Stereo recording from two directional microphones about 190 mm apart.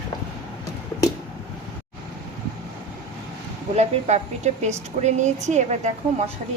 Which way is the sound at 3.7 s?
35° right (ahead or behind).